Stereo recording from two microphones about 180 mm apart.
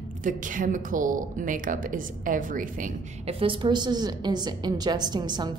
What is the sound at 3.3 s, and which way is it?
A woman's voice, 30° right (ahead or behind).